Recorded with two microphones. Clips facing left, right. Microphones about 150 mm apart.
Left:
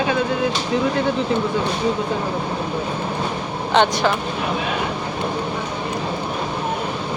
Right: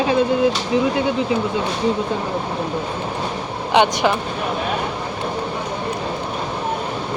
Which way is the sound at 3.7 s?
15° right (ahead or behind).